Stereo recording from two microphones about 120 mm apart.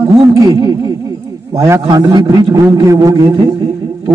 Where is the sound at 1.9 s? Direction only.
35° right (ahead or behind).